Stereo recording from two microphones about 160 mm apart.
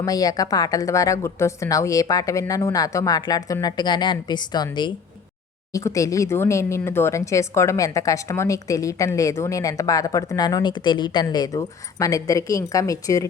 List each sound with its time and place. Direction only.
0.0 s speech: 20° left (ahead or behind)